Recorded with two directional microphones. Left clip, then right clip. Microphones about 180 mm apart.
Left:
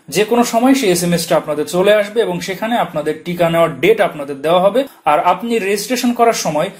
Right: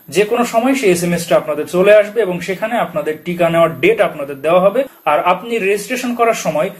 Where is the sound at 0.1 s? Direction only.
35° left (ahead or behind).